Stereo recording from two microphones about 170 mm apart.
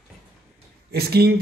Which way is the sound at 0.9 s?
70° right (ahead or behind).